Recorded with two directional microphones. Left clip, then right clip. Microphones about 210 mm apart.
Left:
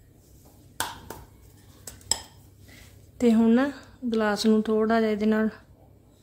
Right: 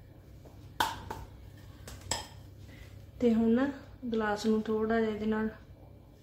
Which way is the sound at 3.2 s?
50° left (ahead or behind).